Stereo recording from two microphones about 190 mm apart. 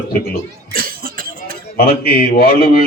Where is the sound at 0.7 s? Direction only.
50° right (ahead or behind).